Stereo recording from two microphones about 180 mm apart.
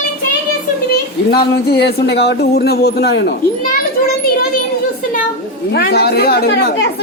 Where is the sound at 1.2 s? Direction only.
60° left (ahead or behind).